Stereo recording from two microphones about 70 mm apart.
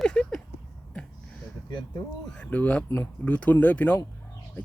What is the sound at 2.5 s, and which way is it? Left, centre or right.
Speech, left.